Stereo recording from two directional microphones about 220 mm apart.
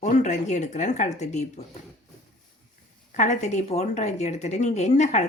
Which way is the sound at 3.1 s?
35° left (ahead or behind).